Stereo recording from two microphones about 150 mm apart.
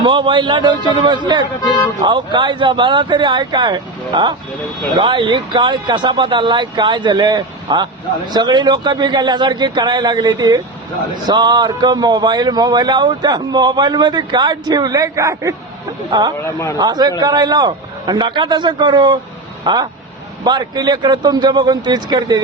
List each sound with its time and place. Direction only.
0.0 s speech: 30° right (ahead or behind)